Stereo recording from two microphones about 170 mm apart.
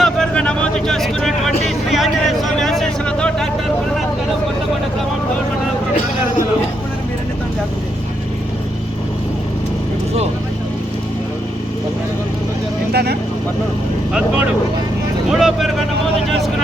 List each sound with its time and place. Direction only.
0.0 s a sound: 5° left (ahead or behind)
12.9 s vehicle: 70° right (ahead or behind)
14.1 s vehicle: 5° right (ahead or behind)